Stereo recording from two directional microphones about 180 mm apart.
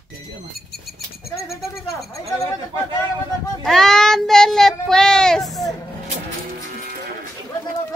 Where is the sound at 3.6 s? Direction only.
5° left (ahead or behind).